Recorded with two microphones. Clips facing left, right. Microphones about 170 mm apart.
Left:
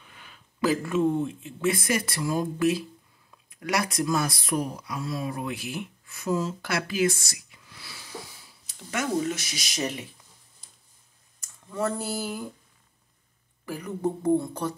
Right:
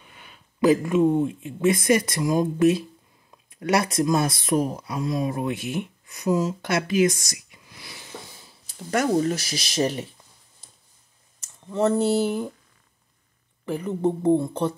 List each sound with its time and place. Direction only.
0.0 s speech: 15° right (ahead or behind)
8.7 s speech: 40° right (ahead or behind)
11.6 s speech: 25° right (ahead or behind)
13.7 s speech: 25° right (ahead or behind)